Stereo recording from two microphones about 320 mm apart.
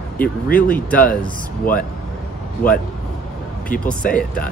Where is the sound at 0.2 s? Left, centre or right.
Centre.